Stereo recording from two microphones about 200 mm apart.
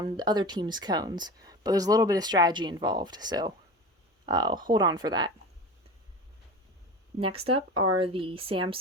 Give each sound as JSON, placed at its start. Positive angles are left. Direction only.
{"t": 0.0, "sound": "a woman's voice", "side_deg": -20}
{"t": 7.2, "sound": "a woman's voice", "side_deg": -30}